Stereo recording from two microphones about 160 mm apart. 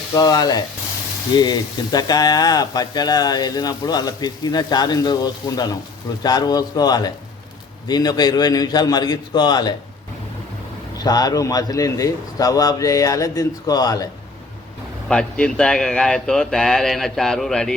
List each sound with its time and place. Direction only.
0.1 s speech: 25° left (ahead or behind)
10.9 s speech: 25° left (ahead or behind)
15.1 s speech: 5° left (ahead or behind)